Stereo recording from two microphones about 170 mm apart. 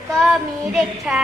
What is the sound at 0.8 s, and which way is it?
Speech, 5° right (ahead or behind).